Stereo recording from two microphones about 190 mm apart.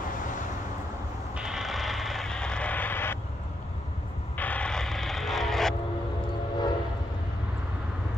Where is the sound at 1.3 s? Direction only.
5° right (ahead or behind).